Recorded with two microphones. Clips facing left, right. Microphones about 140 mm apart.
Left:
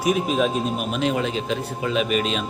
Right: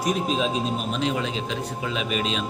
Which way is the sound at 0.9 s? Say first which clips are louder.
Left 5 dB; 50° left (ahead or behind).